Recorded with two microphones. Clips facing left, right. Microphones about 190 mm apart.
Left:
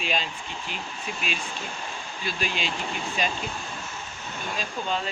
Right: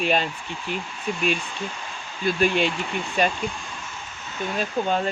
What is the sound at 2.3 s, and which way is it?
Speech, 55° right (ahead or behind).